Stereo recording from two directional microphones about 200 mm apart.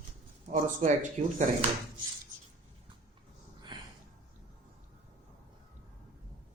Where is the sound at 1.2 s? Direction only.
35° right (ahead or behind).